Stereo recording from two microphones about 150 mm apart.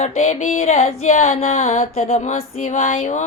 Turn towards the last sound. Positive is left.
turn(degrees=50)  # may be behind; listen again after turning